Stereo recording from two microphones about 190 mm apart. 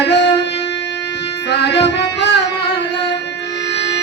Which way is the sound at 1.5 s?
60° left (ahead or behind).